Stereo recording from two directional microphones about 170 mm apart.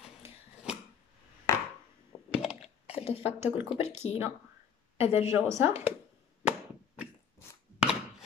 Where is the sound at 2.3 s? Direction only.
5° right (ahead or behind).